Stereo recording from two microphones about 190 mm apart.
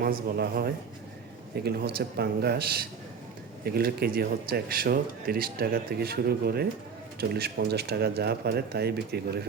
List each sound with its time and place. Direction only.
0.0 s speech: 50° right (ahead or behind)